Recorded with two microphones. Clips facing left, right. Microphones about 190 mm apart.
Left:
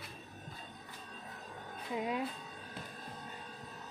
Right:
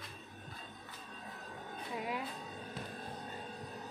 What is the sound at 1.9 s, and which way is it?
Speech, 20° left (ahead or behind).